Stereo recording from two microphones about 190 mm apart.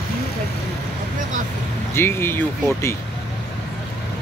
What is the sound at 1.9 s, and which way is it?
Speech, 10° left (ahead or behind).